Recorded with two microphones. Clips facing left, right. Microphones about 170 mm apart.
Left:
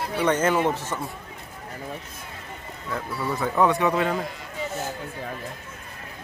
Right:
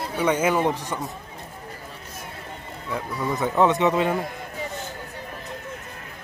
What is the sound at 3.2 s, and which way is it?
Speech, 20° right (ahead or behind).